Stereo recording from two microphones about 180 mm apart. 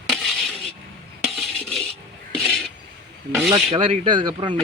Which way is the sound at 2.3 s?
5° left (ahead or behind).